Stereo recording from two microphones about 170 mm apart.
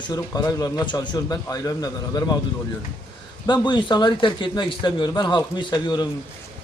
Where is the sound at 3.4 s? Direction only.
25° left (ahead or behind).